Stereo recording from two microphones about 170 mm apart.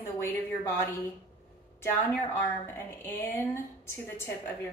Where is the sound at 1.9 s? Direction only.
15° left (ahead or behind).